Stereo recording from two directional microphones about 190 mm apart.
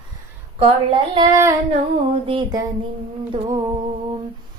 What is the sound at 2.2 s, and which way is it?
Female singing, 25° right (ahead or behind).